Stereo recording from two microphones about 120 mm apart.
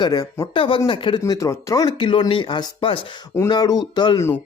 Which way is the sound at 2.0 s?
45° left (ahead or behind).